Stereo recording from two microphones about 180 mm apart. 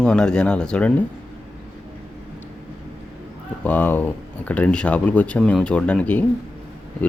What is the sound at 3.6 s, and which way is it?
Speech, 10° left (ahead or behind).